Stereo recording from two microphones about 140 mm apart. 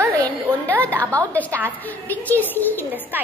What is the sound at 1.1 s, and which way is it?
A woman's voice, 10° left (ahead or behind).